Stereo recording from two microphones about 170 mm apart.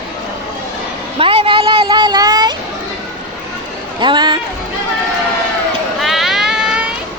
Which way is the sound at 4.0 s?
25° right (ahead or behind).